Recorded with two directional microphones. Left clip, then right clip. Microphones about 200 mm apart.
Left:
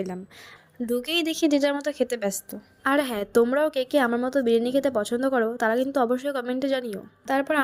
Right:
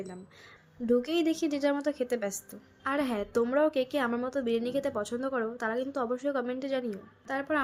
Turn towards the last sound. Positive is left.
turn(degrees=35)  # may be behind; listen again after turning